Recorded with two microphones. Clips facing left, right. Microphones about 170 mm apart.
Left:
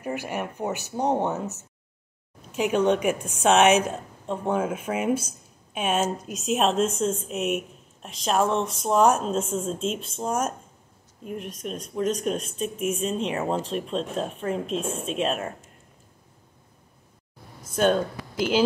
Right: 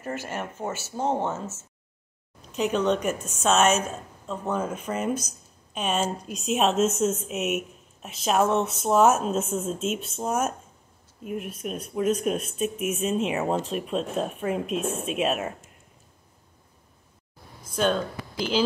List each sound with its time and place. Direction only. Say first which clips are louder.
0.0 s speech: left 2 dB; 15° left (ahead or behind)
5.9 s speech: left 2 dB; 50° left (ahead or behind)
6.3 s a woman's voice: even; centre (ahead or behind)
17.7 s speech: left 3 dB; 50° left (ahead or behind)